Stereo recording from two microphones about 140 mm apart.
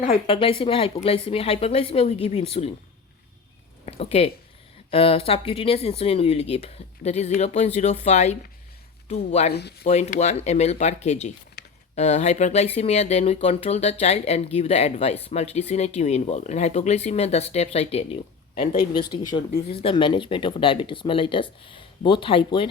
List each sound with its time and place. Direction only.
0.1 s speech: 40° left (ahead or behind)
3.8 s speech: 45° left (ahead or behind)
18.9 s speech: 30° left (ahead or behind)